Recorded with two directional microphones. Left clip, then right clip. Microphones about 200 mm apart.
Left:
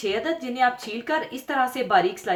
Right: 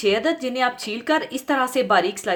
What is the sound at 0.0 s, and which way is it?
A woman's voice, 50° right (ahead or behind).